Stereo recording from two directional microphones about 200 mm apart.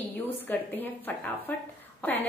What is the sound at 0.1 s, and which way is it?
A woman's voice, 10° left (ahead or behind).